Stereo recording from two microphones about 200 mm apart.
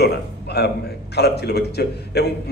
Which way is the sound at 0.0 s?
55° left (ahead or behind).